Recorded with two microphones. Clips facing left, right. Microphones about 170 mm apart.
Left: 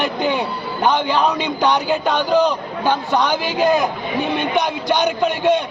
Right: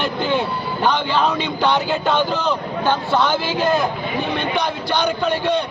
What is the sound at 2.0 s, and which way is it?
A man's voice, 15° left (ahead or behind).